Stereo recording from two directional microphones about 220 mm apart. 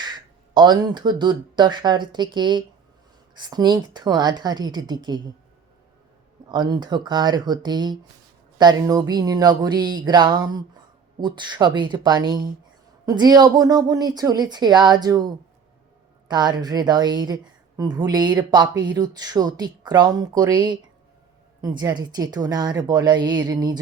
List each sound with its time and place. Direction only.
0.5 s a woman's voice: 20° right (ahead or behind)
6.5 s a woman's voice: 20° right (ahead or behind)
16.3 s a woman's voice: 20° right (ahead or behind)
21.8 s a woman's voice: 20° right (ahead or behind)